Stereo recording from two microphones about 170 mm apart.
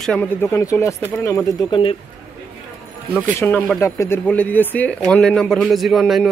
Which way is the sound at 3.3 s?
10° left (ahead or behind).